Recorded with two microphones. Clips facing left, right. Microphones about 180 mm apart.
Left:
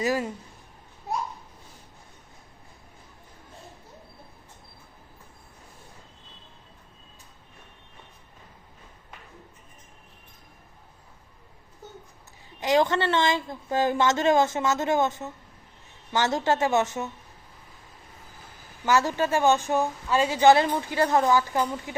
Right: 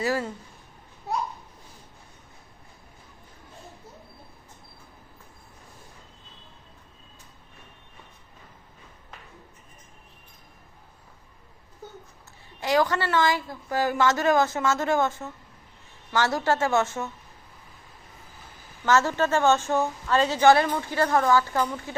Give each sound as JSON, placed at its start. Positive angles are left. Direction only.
{"t": 0.0, "sound": "a woman's voice", "side_deg": 15}
{"t": 12.5, "sound": "a woman's voice", "side_deg": 20}
{"t": 18.9, "sound": "a woman's voice", "side_deg": 15}